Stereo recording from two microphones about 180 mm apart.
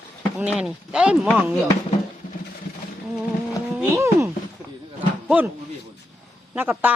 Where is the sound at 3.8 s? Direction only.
15° right (ahead or behind).